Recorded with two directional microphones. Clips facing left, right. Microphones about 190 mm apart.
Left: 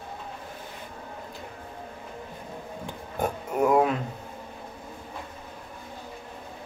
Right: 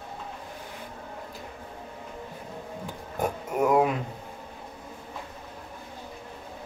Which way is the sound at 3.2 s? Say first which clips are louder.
Left 1 dB; 5° right (ahead or behind).